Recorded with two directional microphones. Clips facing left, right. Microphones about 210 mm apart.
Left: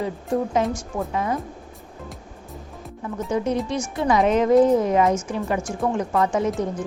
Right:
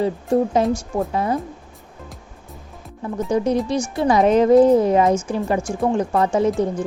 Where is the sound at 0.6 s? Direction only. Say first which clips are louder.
Right 5 dB; 35° right (ahead or behind).